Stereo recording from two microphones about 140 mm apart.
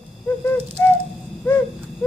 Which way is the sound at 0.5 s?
15° left (ahead or behind).